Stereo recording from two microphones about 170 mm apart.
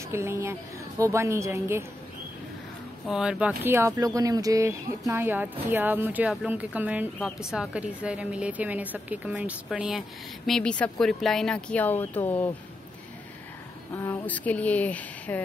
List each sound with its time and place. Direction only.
0.1 s speech: 15° right (ahead or behind)
3.1 s speech: 5° right (ahead or behind)
13.9 s speech: 10° left (ahead or behind)